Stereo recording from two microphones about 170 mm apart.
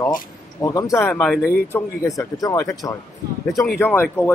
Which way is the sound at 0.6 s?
20° left (ahead or behind).